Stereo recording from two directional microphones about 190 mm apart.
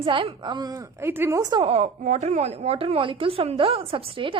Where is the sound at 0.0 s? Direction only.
25° right (ahead or behind).